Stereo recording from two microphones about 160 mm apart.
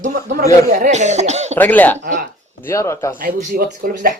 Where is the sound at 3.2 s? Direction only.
60° right (ahead or behind).